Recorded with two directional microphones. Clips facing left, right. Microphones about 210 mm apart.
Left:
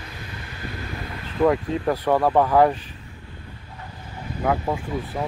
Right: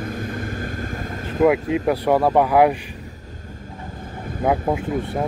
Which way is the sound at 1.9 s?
10° right (ahead or behind).